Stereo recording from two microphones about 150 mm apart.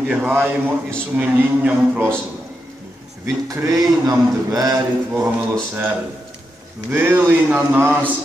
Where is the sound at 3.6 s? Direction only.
25° right (ahead or behind).